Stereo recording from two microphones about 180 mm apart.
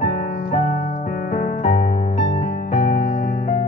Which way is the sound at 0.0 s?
40° left (ahead or behind).